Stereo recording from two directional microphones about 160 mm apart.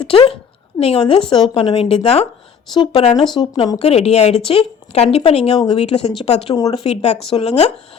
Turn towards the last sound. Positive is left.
turn(degrees=40)  # may be behind; listen again after turning